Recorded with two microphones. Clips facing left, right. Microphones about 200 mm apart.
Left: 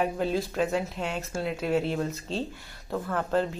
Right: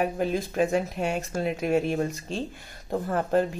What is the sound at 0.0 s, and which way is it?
Speech, 15° right (ahead or behind).